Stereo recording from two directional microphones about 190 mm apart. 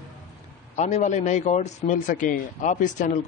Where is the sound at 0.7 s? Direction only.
35° left (ahead or behind).